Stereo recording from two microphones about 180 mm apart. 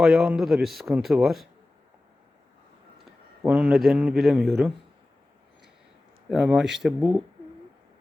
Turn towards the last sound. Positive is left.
turn(degrees=0)  # may be behind; listen again after turning